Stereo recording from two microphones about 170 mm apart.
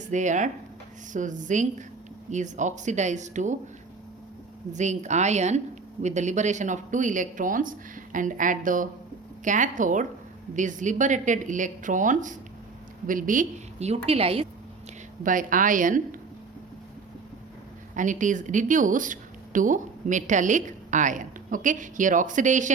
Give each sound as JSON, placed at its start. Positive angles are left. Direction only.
{"t": 0.1, "sound": "a woman's voice", "side_deg": -45}
{"t": 4.7, "sound": "a woman's voice", "side_deg": -45}
{"t": 15.2, "sound": "a woman's voice", "side_deg": -50}
{"t": 17.9, "sound": "a woman's voice", "side_deg": -50}